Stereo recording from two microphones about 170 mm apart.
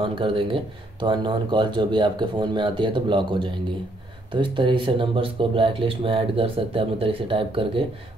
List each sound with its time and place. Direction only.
0.0 s speech: 30° right (ahead or behind)